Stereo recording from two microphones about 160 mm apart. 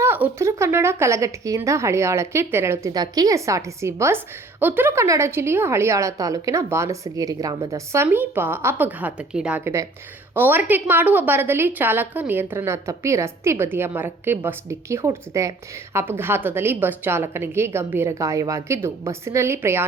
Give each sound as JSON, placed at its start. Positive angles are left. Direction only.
{"t": 0.0, "sound": "a woman's voice", "side_deg": -15}